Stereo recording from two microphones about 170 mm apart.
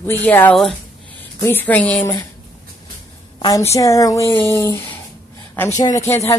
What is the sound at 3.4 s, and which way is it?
Speech, 20° left (ahead or behind).